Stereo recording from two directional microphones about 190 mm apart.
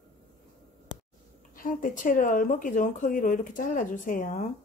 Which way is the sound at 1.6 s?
45° left (ahead or behind).